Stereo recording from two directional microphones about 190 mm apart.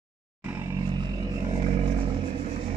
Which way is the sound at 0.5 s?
15° right (ahead or behind).